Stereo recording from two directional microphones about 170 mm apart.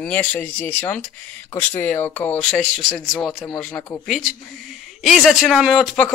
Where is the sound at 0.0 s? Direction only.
10° left (ahead or behind).